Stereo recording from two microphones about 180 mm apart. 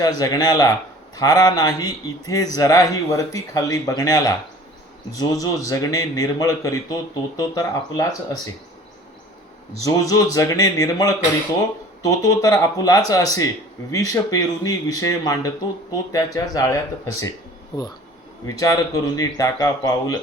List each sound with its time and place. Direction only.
0.0 s speech: 20° left (ahead or behind)
9.8 s speech: 20° left (ahead or behind)